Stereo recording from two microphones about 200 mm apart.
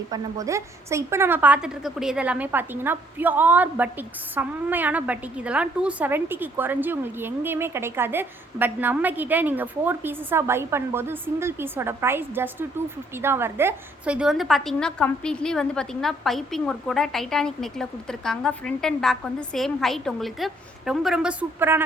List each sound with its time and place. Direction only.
0.1 s a woman's voice: 15° right (ahead or behind)